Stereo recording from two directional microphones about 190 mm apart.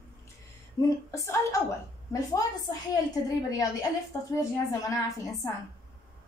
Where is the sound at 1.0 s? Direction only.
15° left (ahead or behind).